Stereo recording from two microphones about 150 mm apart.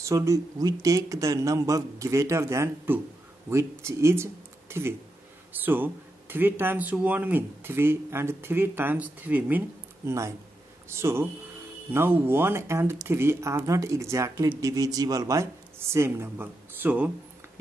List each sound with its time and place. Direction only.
0.0 s speech: 20° right (ahead or behind)